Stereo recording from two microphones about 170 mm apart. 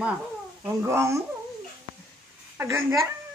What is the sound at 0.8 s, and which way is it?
Speech, 15° right (ahead or behind).